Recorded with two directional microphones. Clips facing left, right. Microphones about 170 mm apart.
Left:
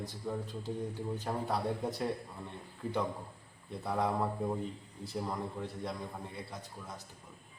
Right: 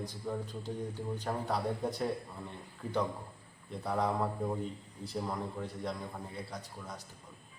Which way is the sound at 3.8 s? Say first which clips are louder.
Even; centre (ahead or behind).